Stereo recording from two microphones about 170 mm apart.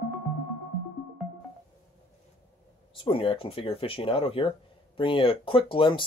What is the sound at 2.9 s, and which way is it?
Speech, 30° left (ahead or behind).